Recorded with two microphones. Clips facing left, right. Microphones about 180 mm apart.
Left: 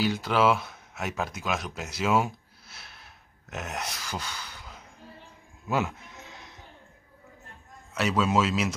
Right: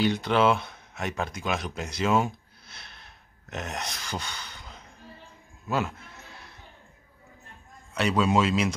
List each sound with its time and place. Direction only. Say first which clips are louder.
0.0 s speech: right 1 dB; 5° left (ahead or behind)
5.7 s a sound: even; 15° left (ahead or behind)
7.9 s speech: right 1 dB; centre (ahead or behind)